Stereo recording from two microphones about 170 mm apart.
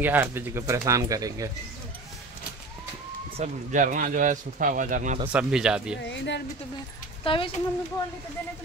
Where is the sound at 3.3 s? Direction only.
45° right (ahead or behind).